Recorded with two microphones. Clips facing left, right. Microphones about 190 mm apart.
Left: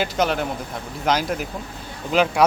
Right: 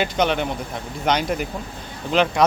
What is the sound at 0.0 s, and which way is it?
Speech, centre (ahead or behind).